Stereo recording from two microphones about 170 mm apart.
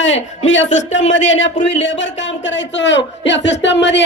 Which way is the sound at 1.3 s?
90° left.